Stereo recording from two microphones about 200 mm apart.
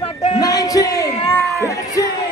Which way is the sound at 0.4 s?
20° left (ahead or behind).